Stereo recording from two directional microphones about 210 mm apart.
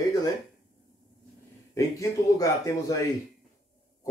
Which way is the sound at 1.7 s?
15° left (ahead or behind).